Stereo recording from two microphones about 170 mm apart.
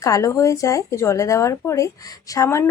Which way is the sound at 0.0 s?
20° left (ahead or behind).